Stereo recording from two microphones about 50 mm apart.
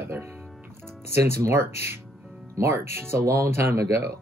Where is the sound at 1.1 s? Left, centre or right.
Right.